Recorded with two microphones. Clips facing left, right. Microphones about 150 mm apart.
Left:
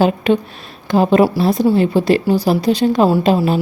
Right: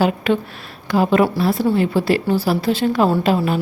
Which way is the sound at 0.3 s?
20° left (ahead or behind).